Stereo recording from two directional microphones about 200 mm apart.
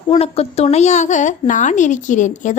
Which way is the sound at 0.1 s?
30° left (ahead or behind).